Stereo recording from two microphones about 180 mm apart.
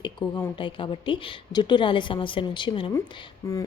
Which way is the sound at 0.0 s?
25° left (ahead or behind).